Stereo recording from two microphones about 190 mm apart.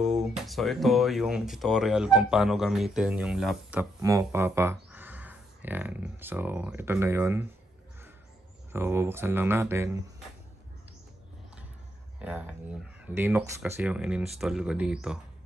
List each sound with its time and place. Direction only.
0.2 s speech: centre (ahead or behind)
8.7 s speech: 10° right (ahead or behind)
12.2 s speech: 5° right (ahead or behind)